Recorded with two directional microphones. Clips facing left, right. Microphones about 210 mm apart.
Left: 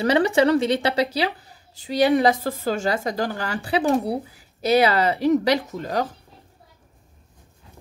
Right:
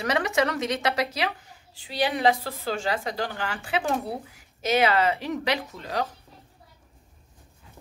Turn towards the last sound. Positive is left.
turn(degrees=45)  # may be behind; listen again after turning